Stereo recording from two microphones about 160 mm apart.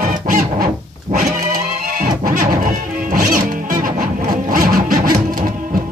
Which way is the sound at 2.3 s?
55° right (ahead or behind).